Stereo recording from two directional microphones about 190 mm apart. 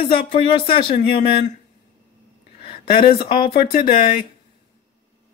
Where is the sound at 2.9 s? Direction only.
50° left (ahead or behind).